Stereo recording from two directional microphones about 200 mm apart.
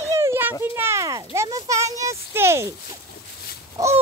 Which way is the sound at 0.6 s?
10° right (ahead or behind).